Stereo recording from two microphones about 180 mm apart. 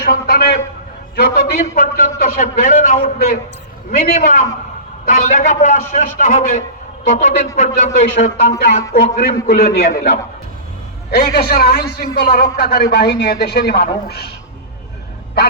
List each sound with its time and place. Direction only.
0.0 s a man's voice: 60° left (ahead or behind)
9.6 s a man's voice: 60° left (ahead or behind)
11.1 s a man's voice: 60° left (ahead or behind)